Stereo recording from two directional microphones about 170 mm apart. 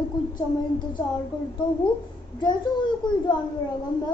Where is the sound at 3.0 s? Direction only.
25° left (ahead or behind).